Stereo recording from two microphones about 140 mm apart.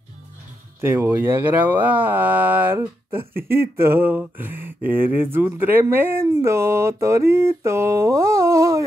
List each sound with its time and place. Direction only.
0.7 s speech: 15° right (ahead or behind)